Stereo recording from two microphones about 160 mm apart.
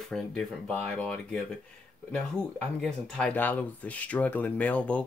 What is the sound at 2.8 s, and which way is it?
Speech, 5° left (ahead or behind).